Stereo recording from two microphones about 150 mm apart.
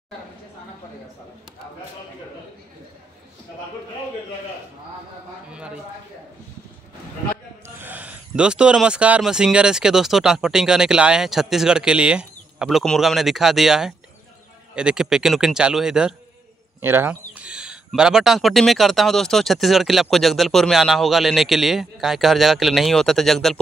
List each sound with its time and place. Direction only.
7.6 s a man's voice: 10° right (ahead or behind)